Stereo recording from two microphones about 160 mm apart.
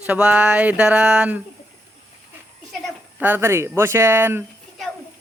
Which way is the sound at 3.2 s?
15° right (ahead or behind).